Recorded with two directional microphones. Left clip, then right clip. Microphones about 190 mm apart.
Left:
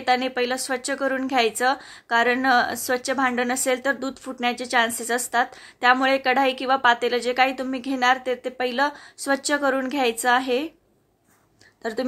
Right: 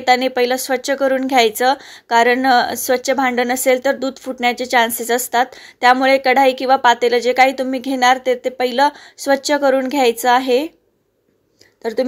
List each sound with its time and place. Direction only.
0.0 s speech: 25° right (ahead or behind)
11.8 s a woman's voice: 15° right (ahead or behind)